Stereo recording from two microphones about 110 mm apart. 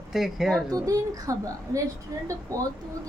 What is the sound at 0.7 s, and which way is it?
A woman's voice, 30° right (ahead or behind).